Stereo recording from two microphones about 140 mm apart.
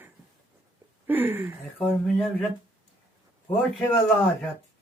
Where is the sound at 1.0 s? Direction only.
15° right (ahead or behind).